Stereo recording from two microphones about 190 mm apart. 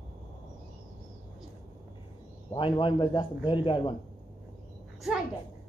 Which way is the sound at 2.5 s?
25° left (ahead or behind).